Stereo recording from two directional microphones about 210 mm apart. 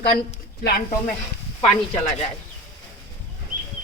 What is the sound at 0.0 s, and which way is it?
Speech, 50° left (ahead or behind).